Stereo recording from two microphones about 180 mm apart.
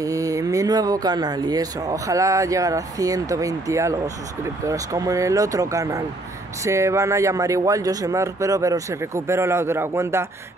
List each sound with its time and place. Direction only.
0.0 s a man's voice: 20° right (ahead or behind)